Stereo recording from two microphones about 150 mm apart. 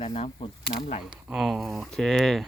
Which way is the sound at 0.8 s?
60° left (ahead or behind).